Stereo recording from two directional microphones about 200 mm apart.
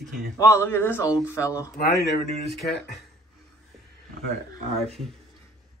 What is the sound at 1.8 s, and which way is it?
Speech, 50° left (ahead or behind).